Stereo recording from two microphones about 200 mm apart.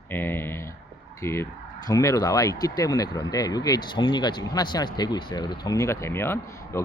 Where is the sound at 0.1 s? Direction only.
10° left (ahead or behind).